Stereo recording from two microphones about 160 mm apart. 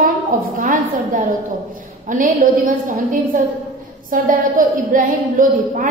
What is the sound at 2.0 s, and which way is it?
A woman's voice, 55° right (ahead or behind).